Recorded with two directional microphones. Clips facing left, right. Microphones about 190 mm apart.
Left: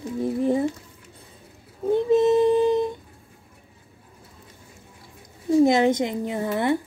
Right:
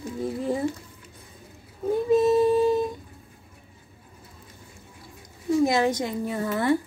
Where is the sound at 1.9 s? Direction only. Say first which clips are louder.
Left 2 dB; 25° left (ahead or behind).